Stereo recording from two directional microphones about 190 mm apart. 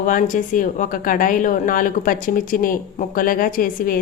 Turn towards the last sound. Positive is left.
turn(degrees=45)  # may be behind; listen again after turning